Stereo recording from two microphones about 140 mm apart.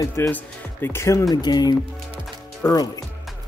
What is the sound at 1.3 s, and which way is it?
Speech, 30° left (ahead or behind).